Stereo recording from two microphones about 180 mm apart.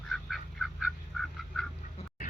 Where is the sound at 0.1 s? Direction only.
Centre (ahead or behind).